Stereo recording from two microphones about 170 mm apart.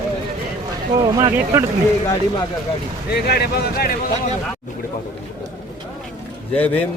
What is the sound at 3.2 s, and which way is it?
Speech, 70° left (ahead or behind).